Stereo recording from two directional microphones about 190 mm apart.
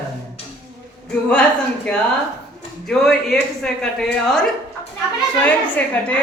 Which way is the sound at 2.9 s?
Centre (ahead or behind).